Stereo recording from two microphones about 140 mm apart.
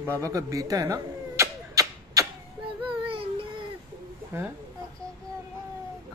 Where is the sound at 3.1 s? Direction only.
40° right (ahead or behind).